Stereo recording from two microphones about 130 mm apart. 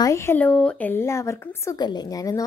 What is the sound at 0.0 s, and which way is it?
Speech, 25° left (ahead or behind).